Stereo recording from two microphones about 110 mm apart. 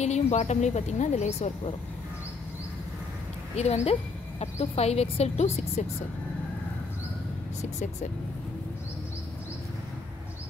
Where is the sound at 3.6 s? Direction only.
75° left (ahead or behind).